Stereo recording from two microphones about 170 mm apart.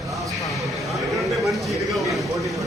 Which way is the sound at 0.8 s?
Centre (ahead or behind).